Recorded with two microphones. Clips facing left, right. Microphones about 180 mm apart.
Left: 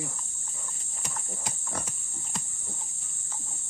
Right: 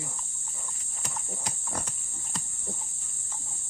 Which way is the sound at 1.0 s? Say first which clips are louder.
Right 1 dB; centre (ahead or behind).